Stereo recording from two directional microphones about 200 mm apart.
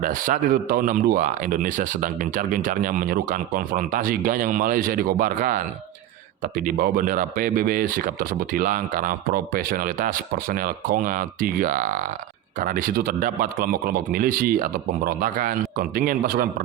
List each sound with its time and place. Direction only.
0.0 s speech: 40° right (ahead or behind)